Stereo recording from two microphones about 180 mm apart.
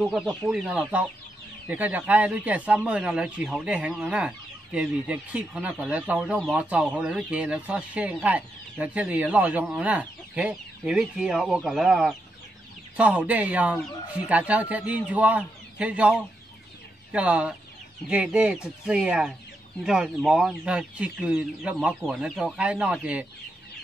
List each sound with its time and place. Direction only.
0.0 s speech: centre (ahead or behind)